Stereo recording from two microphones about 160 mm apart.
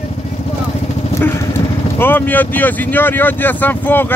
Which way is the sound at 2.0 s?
10° left (ahead or behind).